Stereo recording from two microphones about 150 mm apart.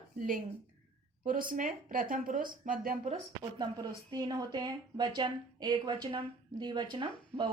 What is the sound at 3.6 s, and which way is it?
A woman's voice, 30° right (ahead or behind).